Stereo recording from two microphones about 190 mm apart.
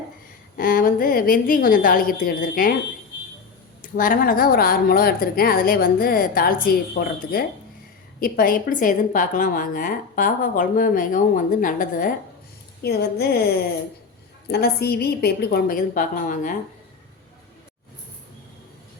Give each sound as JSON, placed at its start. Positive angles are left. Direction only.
{"t": 0.5, "sound": "a woman's voice", "side_deg": 50}
{"t": 3.8, "sound": "a woman's voice", "side_deg": 45}
{"t": 12.8, "sound": "a woman's voice", "side_deg": 55}